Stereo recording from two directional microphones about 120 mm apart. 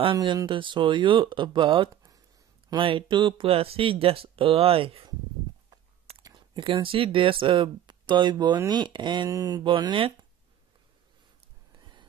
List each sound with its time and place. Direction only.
0.5 s speech: 45° right (ahead or behind)
6.2 s speech: 40° right (ahead or behind)
9.7 s speech: 40° right (ahead or behind)
11.8 s a sound: 40° right (ahead or behind)